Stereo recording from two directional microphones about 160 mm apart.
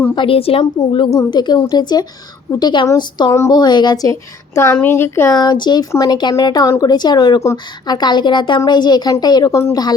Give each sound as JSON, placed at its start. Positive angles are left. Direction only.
{"t": 0.2, "sound": "a woman's voice", "side_deg": 35}